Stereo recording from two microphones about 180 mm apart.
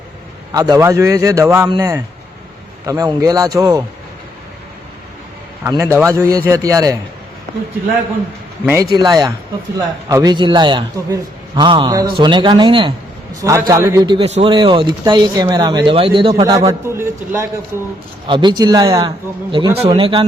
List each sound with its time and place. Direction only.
0.5 s a man's voice: 20° right (ahead or behind)
5.6 s a man's voice: 10° right (ahead or behind)
8.6 s a man's voice: 10° right (ahead or behind)
15.9 s speech: 30° right (ahead or behind)
16.3 s a man's voice: 20° right (ahead or behind)
18.3 s a man's voice: 25° right (ahead or behind)